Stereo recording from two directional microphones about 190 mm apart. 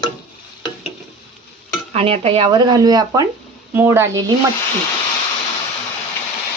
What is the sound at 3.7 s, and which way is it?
Stir, 10° right (ahead or behind).